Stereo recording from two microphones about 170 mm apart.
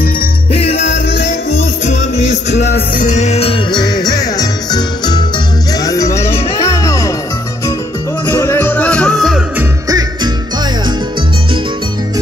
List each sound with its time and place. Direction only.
0.5 s music: 35° left (ahead or behind)
3.0 s music: 45° left (ahead or behind); by 7.1 s 20° left (ahead or behind)
8.3 s music: 15° left (ahead or behind)
9.6 s music: 20° right (ahead or behind)